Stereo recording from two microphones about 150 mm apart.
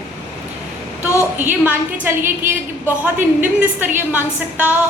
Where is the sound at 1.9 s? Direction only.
15° right (ahead or behind).